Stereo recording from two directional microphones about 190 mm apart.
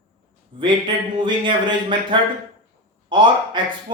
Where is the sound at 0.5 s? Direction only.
25° right (ahead or behind).